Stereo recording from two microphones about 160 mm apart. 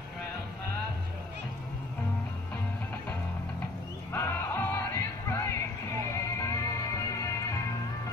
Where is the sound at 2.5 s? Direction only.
10° left (ahead or behind).